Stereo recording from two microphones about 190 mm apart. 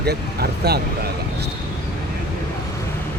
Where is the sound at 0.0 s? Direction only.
55° right (ahead or behind).